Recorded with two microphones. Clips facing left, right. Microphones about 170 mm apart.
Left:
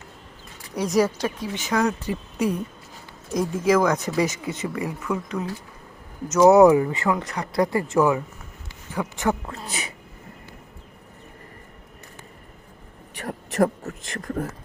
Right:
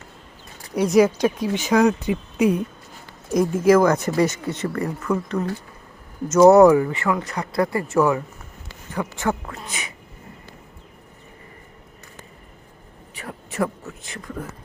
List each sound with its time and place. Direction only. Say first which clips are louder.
0.8 s speech: right 5 dB; 10° right (ahead or behind)
1.4 s speech: right 6 dB; 20° right (ahead or behind)
1.8 s speech: right 5 dB; 10° right (ahead or behind)
6.5 s speech: left 1 dB; 15° left (ahead or behind)
9.6 s speech: left 3 dB; 35° left (ahead or behind)
13.2 s speech: left 4 dB; 40° left (ahead or behind)